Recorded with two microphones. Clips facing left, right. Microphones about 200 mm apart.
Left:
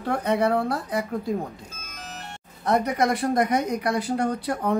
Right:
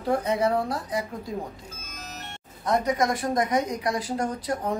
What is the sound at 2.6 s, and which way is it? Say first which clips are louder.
Speech: left 2 dB; 65° left (ahead or behind).